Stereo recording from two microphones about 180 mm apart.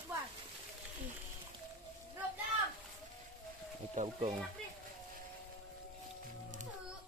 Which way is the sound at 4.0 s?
45° right (ahead or behind).